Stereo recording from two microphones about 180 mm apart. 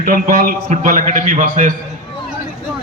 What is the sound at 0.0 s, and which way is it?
A man's voice, 50° right (ahead or behind).